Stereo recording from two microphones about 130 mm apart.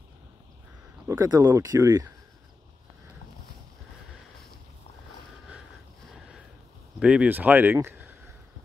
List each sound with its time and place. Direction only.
1.0 s speech: 25° right (ahead or behind)
7.0 s speech: 10° right (ahead or behind)